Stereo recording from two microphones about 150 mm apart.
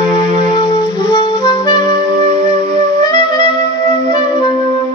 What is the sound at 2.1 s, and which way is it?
Music, 55° right (ahead or behind).